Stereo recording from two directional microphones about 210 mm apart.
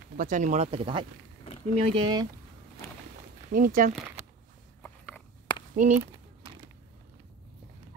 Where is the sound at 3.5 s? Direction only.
40° right (ahead or behind).